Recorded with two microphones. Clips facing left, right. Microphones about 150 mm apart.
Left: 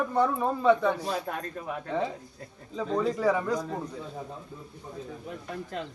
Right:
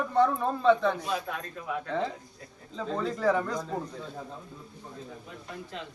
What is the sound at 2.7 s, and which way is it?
Speech, 10° left (ahead or behind).